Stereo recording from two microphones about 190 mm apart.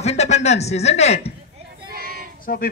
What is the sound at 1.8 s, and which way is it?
Child singing, 50° right (ahead or behind).